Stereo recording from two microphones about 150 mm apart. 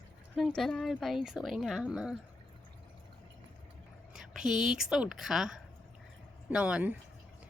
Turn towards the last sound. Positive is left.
turn(degrees=-10)  # may be behind; listen again after turning